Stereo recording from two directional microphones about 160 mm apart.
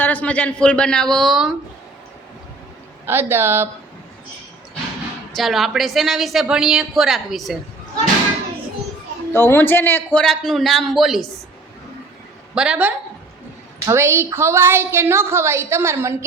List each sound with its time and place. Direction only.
0.0 s a man's voice: 10° left (ahead or behind)
3.1 s a woman's voice: 15° right (ahead or behind)
5.3 s speech: centre (ahead or behind)
9.3 s speech: 15° left (ahead or behind); by 11.3 s centre (ahead or behind)
12.5 s speech: 5° right (ahead or behind)
13.8 s a woman's voice: 15° right (ahead or behind)